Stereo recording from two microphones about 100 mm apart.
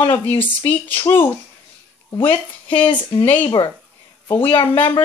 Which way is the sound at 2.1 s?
65° left (ahead or behind).